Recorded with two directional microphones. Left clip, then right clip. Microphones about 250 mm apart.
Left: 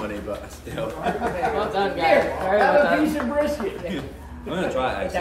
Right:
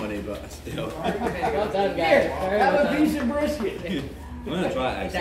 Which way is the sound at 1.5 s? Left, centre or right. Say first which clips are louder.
Left 1 dB; centre.